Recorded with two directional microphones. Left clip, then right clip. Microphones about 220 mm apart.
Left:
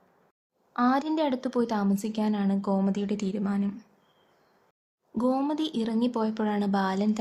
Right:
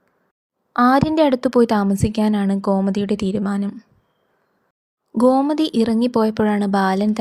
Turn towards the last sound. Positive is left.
turn(degrees=-30)  # may be behind; listen again after turning